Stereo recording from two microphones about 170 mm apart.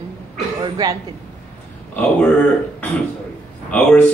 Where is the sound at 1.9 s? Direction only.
10° left (ahead or behind).